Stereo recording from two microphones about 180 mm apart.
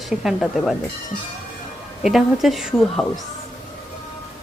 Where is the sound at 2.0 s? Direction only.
Centre (ahead or behind).